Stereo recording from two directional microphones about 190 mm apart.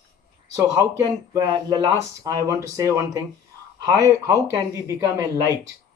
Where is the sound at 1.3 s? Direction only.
20° right (ahead or behind).